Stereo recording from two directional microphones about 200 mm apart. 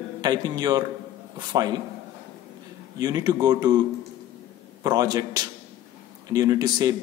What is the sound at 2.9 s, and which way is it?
Speech, 20° right (ahead or behind).